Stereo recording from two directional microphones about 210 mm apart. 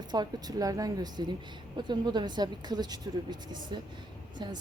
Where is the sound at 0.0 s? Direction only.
20° right (ahead or behind).